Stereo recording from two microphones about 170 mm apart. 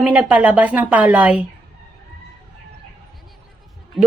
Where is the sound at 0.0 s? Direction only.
10° right (ahead or behind).